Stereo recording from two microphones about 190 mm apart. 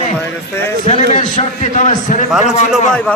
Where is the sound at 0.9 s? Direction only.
40° left (ahead or behind).